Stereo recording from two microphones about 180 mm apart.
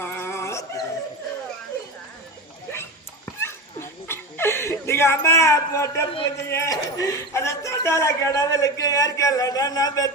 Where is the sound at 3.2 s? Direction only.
15° left (ahead or behind).